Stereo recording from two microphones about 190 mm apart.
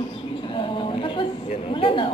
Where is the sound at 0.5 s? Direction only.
25° left (ahead or behind).